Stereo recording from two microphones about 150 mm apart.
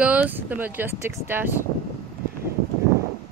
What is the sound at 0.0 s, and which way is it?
Speech, 10° right (ahead or behind).